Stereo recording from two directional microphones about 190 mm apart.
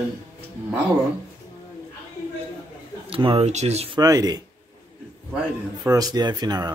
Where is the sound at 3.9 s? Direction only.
20° right (ahead or behind).